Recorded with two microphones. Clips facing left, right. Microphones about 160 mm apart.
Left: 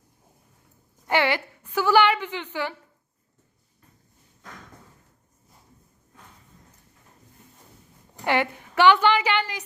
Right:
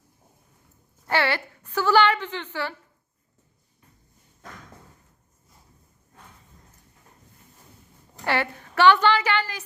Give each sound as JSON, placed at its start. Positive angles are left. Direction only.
{"t": 1.0, "sound": "a woman's voice", "side_deg": 15}
{"t": 8.2, "sound": "a woman's voice", "side_deg": 15}